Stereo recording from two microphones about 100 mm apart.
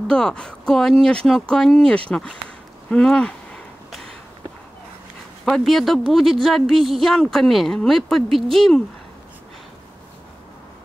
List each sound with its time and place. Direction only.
0.1 s speech: 5° left (ahead or behind)
2.9 s a sound: 5° left (ahead or behind)
5.4 s speech: centre (ahead or behind)